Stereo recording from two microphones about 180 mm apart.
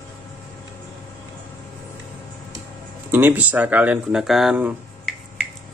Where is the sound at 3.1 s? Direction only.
10° right (ahead or behind).